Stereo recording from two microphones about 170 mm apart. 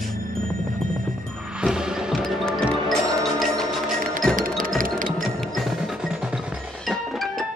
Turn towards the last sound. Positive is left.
turn(degrees=0)  # may be behind; listen again after turning